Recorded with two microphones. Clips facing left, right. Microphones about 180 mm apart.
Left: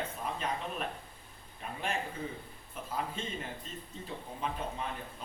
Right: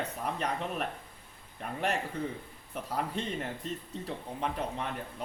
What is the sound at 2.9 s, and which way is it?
A man's voice, 70° right (ahead or behind).